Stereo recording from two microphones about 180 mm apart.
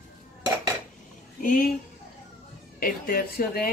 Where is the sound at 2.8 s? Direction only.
55° left (ahead or behind).